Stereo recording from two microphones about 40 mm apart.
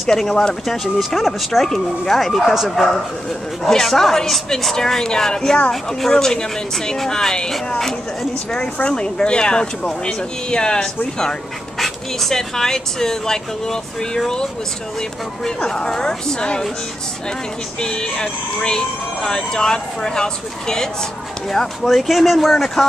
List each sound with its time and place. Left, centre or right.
0.0 s speech: centre
0.7 s speech: centre
3.6 s speech: centre
8.8 s speech: left
11.8 s speech: centre
17.7 s speech: left
21.5 s speech: centre